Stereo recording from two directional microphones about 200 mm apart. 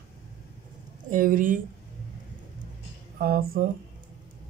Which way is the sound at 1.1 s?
45° right (ahead or behind).